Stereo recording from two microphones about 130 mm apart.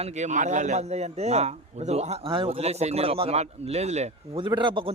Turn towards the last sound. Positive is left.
turn(degrees=-40)  # may be behind; listen again after turning